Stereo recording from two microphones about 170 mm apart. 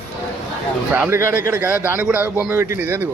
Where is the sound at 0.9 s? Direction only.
10° right (ahead or behind).